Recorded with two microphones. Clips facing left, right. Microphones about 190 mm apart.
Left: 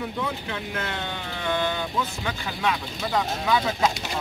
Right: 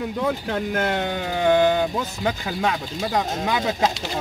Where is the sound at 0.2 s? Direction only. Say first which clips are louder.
Right 6 dB; 40° right (ahead or behind).